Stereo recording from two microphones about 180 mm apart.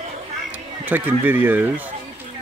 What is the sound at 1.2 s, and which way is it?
Speech, 10° right (ahead or behind).